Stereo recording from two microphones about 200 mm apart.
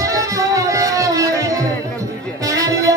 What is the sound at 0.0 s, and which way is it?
Music, 15° right (ahead or behind).